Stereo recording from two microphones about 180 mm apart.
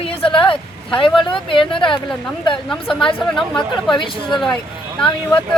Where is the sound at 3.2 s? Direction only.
Centre (ahead or behind).